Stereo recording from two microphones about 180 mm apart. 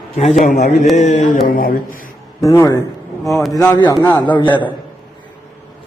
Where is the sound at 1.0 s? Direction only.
40° left (ahead or behind).